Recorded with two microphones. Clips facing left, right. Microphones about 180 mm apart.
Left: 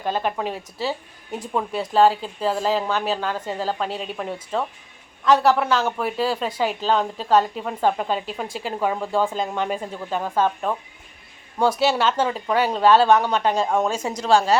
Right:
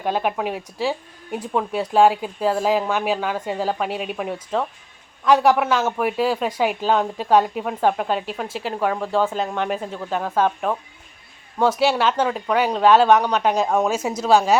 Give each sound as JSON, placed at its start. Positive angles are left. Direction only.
{"t": 0.0, "sound": "a woman's voice", "side_deg": -5}
{"t": 11.8, "sound": "a woman's voice", "side_deg": -5}